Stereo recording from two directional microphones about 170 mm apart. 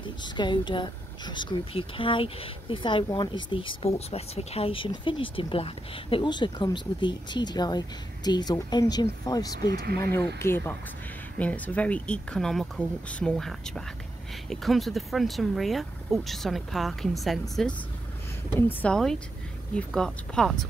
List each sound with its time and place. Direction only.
0.2 s speech: 25° left (ahead or behind); by 20.6 s 5° left (ahead or behind)